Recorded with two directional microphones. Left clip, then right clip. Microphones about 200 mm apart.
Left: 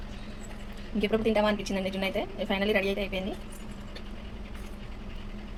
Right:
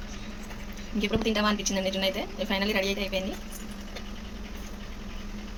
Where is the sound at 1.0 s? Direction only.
25° left (ahead or behind).